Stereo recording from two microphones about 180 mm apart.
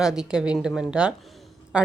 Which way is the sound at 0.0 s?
5° right (ahead or behind).